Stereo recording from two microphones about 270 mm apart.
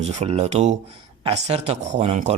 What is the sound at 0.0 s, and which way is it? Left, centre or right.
Speech, right.